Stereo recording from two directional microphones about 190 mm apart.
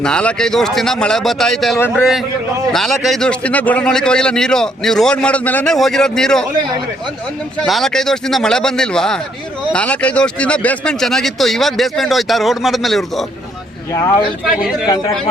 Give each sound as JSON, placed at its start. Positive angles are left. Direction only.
{"t": 0.0, "sound": "a man's voice", "side_deg": 5}
{"t": 7.6, "sound": "a man's voice", "side_deg": 0}
{"t": 13.9, "sound": "speech", "side_deg": 20}
{"t": 14.6, "sound": "a man's voice", "side_deg": -5}